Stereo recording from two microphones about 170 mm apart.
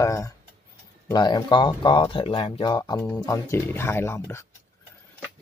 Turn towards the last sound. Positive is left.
turn(degrees=15)  # may be behind; listen again after turning